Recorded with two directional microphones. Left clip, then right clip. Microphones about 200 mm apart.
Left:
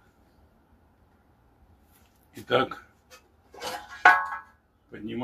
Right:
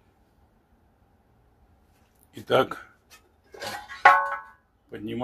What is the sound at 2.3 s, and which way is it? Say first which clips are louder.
Speech: right 2 dB; 35° right (ahead or behind).